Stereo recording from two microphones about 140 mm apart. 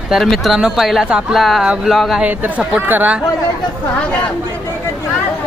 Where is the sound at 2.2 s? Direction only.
10° right (ahead or behind).